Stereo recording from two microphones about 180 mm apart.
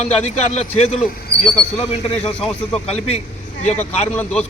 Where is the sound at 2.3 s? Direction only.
5° left (ahead or behind).